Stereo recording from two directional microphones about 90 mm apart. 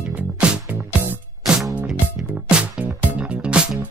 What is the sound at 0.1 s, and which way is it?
Music, 15° right (ahead or behind).